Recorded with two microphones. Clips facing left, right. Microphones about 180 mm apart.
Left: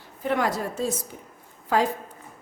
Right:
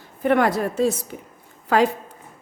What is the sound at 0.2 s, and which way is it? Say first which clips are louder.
Speech: right 6 dB; 60° right (ahead or behind).